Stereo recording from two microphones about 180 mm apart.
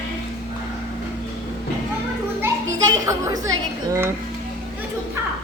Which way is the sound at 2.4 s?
20° right (ahead or behind).